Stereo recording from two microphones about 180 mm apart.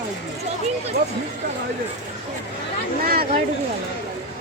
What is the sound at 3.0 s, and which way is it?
Speech, 55° right (ahead or behind).